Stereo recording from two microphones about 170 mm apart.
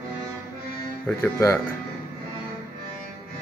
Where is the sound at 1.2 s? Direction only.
15° left (ahead or behind).